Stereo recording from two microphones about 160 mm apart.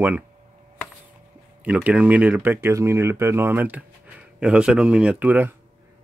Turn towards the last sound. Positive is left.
turn(degrees=-10)  # may be behind; listen again after turning